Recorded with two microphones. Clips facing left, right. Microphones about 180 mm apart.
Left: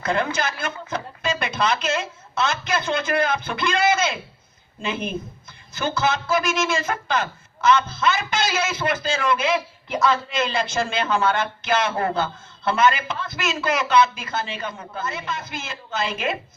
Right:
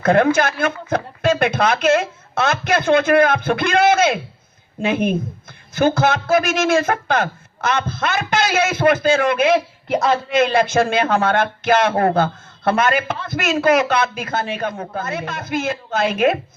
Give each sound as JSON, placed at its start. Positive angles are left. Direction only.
{"t": 0.0, "sound": "a woman's voice", "side_deg": -55}